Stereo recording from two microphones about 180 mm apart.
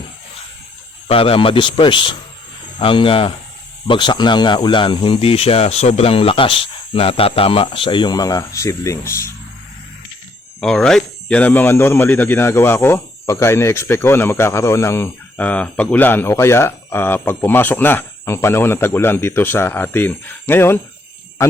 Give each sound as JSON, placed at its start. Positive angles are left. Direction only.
{"t": 1.0, "sound": "speech", "side_deg": 30}
{"t": 10.6, "sound": "speech", "side_deg": 5}